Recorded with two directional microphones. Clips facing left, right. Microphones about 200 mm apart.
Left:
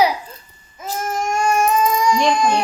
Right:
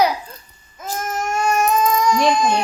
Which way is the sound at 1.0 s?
10° left (ahead or behind).